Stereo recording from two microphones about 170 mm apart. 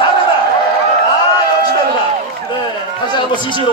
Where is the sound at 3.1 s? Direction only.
25° left (ahead or behind).